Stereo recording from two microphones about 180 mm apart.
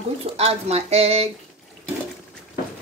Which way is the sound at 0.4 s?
35° right (ahead or behind).